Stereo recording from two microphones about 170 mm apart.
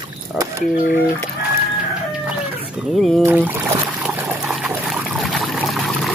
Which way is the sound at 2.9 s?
Centre (ahead or behind).